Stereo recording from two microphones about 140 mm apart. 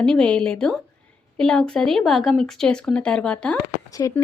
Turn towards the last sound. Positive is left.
turn(degrees=25)  # may be behind; listen again after turning